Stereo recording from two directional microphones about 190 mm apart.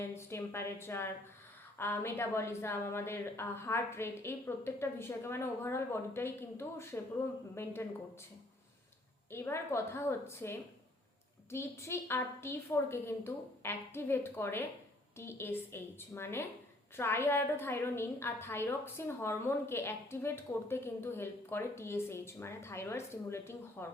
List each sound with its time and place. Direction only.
0.0 s a woman's voice: 15° left (ahead or behind)
9.3 s a woman's voice: 15° left (ahead or behind)